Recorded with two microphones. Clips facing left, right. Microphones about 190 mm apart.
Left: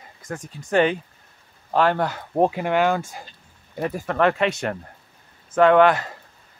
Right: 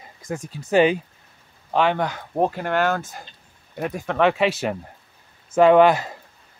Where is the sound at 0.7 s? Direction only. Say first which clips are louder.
Right 2 dB; 10° right (ahead or behind).